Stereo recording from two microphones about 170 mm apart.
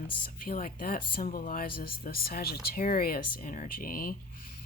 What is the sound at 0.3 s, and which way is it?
A woman's voice, 55° left (ahead or behind).